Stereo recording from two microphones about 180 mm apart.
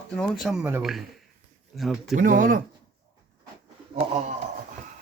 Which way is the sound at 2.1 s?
50° right (ahead or behind).